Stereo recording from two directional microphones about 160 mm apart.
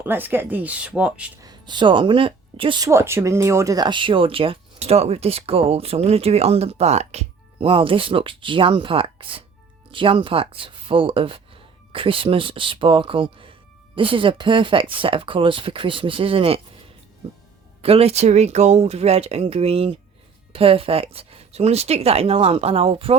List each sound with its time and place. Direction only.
0.0 s speech: 10° right (ahead or behind)
1.4 s speech: 25° right (ahead or behind)
17.8 s speech: 40° right (ahead or behind)